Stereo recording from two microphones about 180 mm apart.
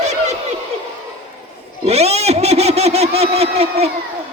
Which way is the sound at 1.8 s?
35° right (ahead or behind).